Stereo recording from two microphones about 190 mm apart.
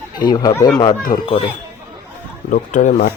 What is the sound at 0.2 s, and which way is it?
Speech, 20° left (ahead or behind).